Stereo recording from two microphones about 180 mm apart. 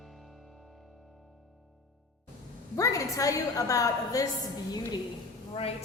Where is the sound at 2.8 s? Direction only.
20° left (ahead or behind).